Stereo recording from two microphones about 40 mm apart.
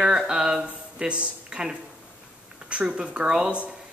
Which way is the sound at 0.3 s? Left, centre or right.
Right.